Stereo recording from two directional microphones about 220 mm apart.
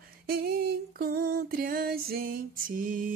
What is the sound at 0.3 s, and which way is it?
Female singing, 45° right (ahead or behind).